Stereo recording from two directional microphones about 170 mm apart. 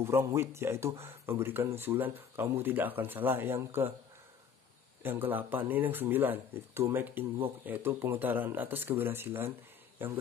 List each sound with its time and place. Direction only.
0.0 s speech: 15° right (ahead or behind)
5.0 s speech: 10° right (ahead or behind)